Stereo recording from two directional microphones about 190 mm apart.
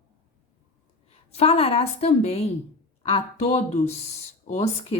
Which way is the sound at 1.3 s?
30° left (ahead or behind).